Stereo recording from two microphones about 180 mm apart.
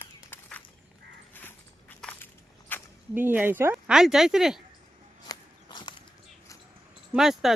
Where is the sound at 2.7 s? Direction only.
10° left (ahead or behind).